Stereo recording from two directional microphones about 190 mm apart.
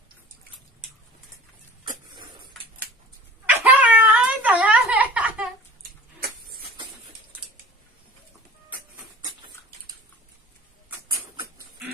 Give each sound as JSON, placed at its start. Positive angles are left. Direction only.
{"t": 3.4, "sound": "cat", "side_deg": -10}
{"t": 11.3, "sound": "duck", "side_deg": -15}